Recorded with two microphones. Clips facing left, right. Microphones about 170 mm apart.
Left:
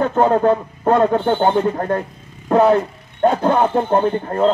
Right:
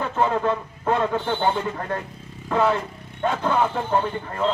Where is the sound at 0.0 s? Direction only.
45° left (ahead or behind).